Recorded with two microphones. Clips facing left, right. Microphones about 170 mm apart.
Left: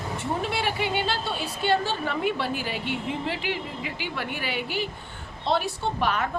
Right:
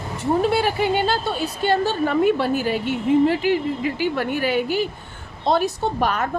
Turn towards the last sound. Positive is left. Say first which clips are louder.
# right 4 dB
turn(degrees=-40)  # may be behind; listen again after turning